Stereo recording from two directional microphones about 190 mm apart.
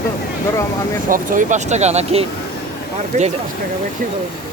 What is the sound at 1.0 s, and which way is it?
Speech, 45° right (ahead or behind).